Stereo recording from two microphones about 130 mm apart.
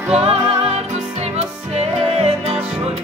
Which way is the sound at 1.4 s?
50° right (ahead or behind).